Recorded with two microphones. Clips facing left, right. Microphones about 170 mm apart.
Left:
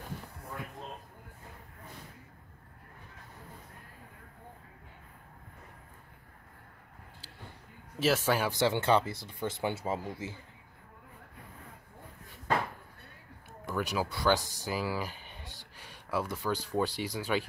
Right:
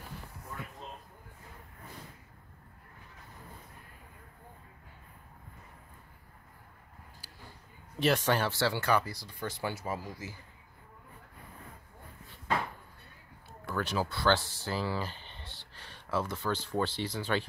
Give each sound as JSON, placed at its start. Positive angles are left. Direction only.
{"t": 8.0, "sound": "speech", "side_deg": 5}
{"t": 13.7, "sound": "speech", "side_deg": 10}